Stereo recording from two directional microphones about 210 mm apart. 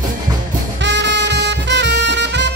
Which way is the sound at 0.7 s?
55° right (ahead or behind).